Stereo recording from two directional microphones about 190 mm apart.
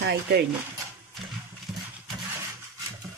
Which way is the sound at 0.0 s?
60° right (ahead or behind).